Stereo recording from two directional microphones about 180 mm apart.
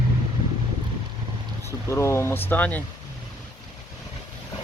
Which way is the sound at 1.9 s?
15° left (ahead or behind).